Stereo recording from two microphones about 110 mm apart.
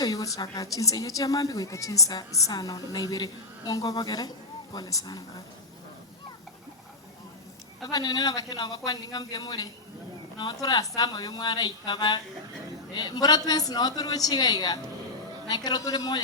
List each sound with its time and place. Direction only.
0.0 s a woman's voice: 35° left (ahead or behind)
7.9 s a woman's voice: 35° left (ahead or behind)